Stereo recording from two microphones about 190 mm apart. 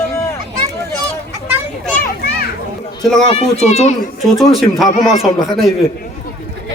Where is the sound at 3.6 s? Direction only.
35° left (ahead or behind).